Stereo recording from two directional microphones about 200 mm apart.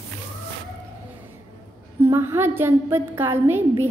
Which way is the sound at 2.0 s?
15° right (ahead or behind).